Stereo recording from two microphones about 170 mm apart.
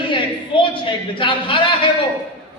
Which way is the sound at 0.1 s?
30° left (ahead or behind).